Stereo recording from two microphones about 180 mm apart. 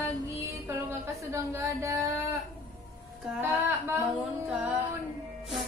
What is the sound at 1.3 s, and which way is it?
Speech, 15° right (ahead or behind).